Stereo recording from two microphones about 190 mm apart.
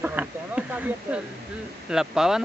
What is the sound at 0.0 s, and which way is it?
Speech, 10° right (ahead or behind).